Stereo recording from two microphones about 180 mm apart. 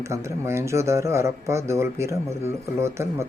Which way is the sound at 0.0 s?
15° right (ahead or behind).